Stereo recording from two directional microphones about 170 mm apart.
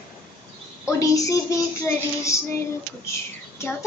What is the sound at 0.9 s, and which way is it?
Speech, 20° left (ahead or behind).